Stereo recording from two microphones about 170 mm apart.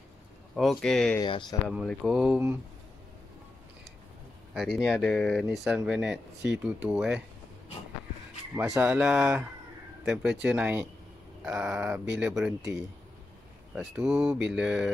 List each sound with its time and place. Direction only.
0.6 s speech: centre (ahead or behind)
1.2 s speech: 25° left (ahead or behind)
1.7 s speech: centre (ahead or behind)
4.6 s speech: centre (ahead or behind)
8.5 s speech: 5° right (ahead or behind)
13.7 s speech: 5° right (ahead or behind)